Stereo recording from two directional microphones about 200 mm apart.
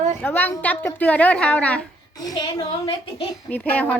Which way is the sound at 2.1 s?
20° left (ahead or behind).